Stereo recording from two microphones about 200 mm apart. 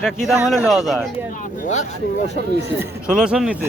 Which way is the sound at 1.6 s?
35° left (ahead or behind).